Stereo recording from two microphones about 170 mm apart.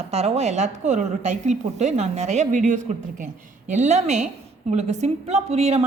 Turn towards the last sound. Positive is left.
turn(degrees=-40)  # may be behind; listen again after turning